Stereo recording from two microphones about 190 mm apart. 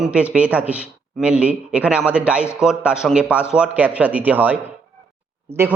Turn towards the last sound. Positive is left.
turn(degrees=-10)  # may be behind; listen again after turning